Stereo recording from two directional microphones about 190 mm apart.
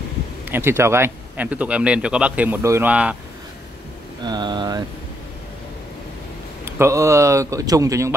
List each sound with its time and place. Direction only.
0.5 s speech: 10° right (ahead or behind)
4.2 s a sound: 25° right (ahead or behind)
6.6 s speech: 15° right (ahead or behind)